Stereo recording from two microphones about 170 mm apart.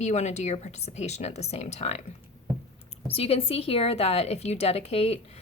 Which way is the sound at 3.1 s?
35° left (ahead or behind).